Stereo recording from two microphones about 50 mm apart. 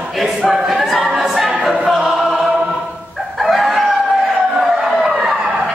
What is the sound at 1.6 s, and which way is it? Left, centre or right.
Music, centre.